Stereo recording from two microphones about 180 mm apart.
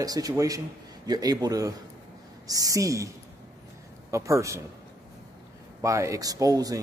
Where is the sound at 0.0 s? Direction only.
20° right (ahead or behind).